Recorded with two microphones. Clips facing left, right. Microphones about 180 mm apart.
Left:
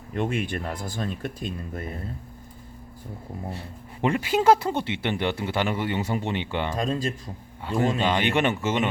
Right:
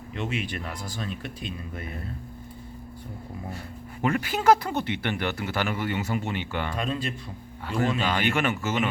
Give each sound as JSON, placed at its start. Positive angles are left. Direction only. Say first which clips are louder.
{"t": 0.1, "sound": "speech", "louder": "left 4 dB", "side_deg": 50}
{"t": 4.0, "sound": "speech", "louder": "left 2 dB", "side_deg": 30}
{"t": 6.7, "sound": "speech", "louder": "left 4 dB", "side_deg": 40}
{"t": 7.6, "sound": "speech", "louder": "left 2 dB", "side_deg": 20}